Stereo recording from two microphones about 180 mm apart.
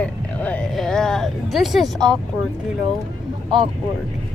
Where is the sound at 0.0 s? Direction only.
5° left (ahead or behind).